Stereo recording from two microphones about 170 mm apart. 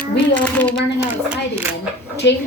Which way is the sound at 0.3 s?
10° left (ahead or behind).